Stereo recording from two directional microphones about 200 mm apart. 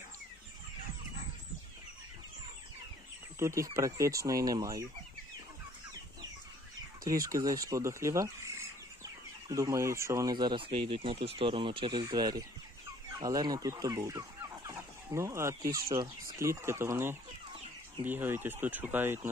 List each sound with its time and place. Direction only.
3.3 s speech: 15° right (ahead or behind)
7.1 s speech: 15° right (ahead or behind)